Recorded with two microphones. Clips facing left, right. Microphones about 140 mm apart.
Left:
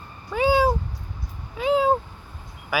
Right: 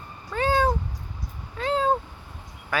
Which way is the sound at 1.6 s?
5° left (ahead or behind).